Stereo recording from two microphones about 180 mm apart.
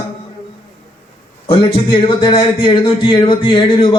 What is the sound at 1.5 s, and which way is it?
A man's voice, 30° left (ahead or behind).